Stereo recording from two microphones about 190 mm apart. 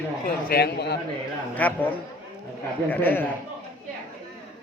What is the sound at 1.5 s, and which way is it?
Speech, 10° left (ahead or behind).